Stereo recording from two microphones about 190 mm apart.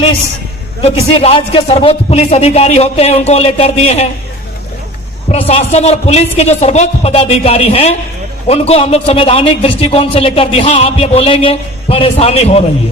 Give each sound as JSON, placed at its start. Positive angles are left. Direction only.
{"t": 1.2, "sound": "a man's voice", "side_deg": 30}
{"t": 5.3, "sound": "a man's voice", "side_deg": 35}